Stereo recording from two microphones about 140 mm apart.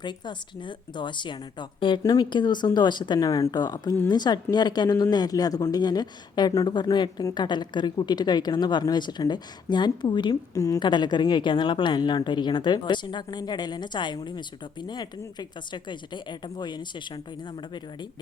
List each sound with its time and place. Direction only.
0.0 s a woman's voice: 30° left (ahead or behind)